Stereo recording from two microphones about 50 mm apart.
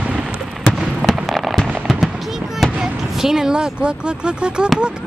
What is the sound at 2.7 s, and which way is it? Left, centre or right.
Speech, centre.